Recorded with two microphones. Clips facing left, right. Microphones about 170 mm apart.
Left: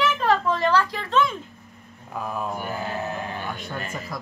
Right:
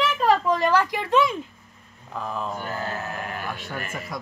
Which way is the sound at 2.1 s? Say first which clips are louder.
Left 1 dB; 10° left (ahead or behind).